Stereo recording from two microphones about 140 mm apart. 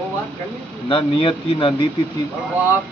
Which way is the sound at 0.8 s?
35° left (ahead or behind).